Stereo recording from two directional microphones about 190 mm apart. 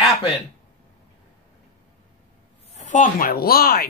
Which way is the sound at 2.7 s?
40° left (ahead or behind).